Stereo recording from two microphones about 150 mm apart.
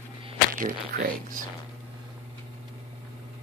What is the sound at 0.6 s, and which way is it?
Speech, 65° right (ahead or behind).